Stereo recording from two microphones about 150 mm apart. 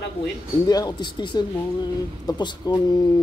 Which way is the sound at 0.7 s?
25° left (ahead or behind).